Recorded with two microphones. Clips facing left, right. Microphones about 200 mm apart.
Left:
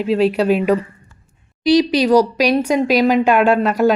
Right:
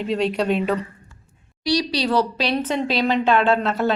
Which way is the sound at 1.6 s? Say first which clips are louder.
Left 8 dB; 20° left (ahead or behind).